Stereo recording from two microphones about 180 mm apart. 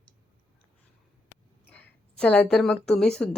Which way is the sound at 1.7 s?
10° left (ahead or behind).